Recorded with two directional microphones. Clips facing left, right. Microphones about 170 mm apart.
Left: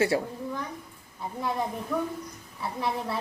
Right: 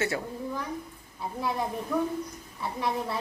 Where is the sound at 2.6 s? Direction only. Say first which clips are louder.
Even; centre (ahead or behind).